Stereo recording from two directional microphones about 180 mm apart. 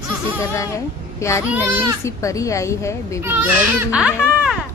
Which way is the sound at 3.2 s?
10° right (ahead or behind).